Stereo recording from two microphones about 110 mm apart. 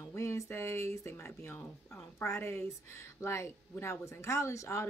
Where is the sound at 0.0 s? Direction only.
25° left (ahead or behind).